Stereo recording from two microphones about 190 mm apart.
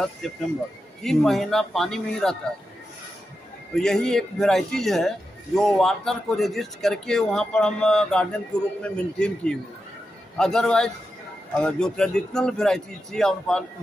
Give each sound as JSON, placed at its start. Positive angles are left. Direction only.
{"t": 0.2, "sound": "a man's voice", "side_deg": 0}
{"t": 3.7, "sound": "a man's voice", "side_deg": 5}